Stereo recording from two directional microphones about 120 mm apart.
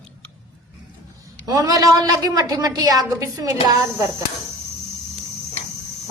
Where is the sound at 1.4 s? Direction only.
30° right (ahead or behind).